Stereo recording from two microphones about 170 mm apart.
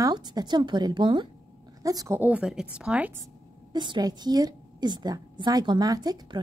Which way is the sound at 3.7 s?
25° right (ahead or behind).